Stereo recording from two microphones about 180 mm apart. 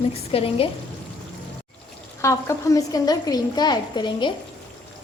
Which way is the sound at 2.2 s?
15° left (ahead or behind).